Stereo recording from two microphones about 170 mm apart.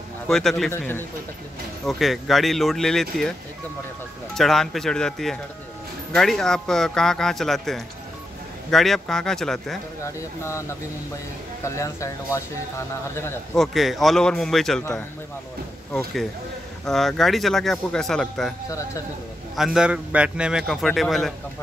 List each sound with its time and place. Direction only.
0.3 s a man's voice: centre (ahead or behind)
1.9 s a man's voice: centre (ahead or behind)
4.4 s a man's voice: centre (ahead or behind)
10.0 s speech: 15° left (ahead or behind)
13.6 s a man's voice: centre (ahead or behind)
15.9 s a man's voice: centre (ahead or behind)
18.7 s a man's voice: 20° left (ahead or behind)
19.5 s a man's voice: 5° right (ahead or behind)